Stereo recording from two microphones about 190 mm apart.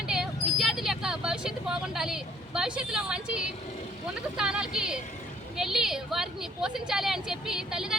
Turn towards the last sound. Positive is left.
turn(degrees=-5)  # may be behind; listen again after turning